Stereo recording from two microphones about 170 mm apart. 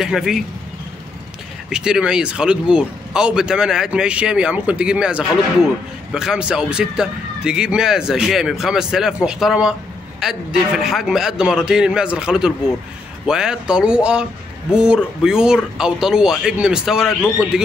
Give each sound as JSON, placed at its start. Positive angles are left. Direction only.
{"t": 0.0, "sound": "speech", "side_deg": 0}
{"t": 1.7, "sound": "speech", "side_deg": -5}